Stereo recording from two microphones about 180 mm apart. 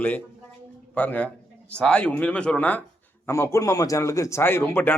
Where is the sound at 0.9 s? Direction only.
10° left (ahead or behind).